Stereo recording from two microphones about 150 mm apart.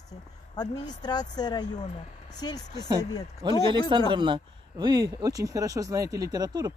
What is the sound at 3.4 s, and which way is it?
Speech, 35° right (ahead or behind).